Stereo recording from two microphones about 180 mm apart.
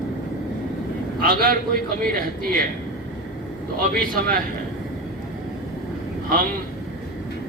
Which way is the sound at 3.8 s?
50° right (ahead or behind).